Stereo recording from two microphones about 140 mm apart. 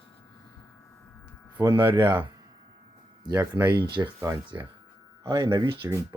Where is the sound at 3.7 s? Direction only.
35° right (ahead or behind).